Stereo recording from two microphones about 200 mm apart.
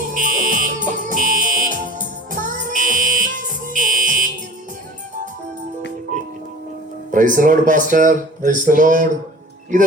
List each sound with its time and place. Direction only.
0.1 s music: 40° right (ahead or behind)
7.1 s speech: 40° right (ahead or behind)